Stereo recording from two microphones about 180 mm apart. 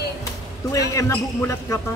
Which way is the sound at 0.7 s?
15° left (ahead or behind).